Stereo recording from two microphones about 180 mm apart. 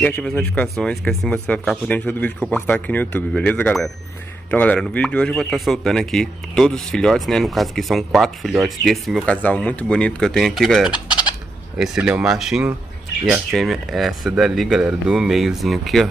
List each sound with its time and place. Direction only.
0.0 s speech: 5° left (ahead or behind)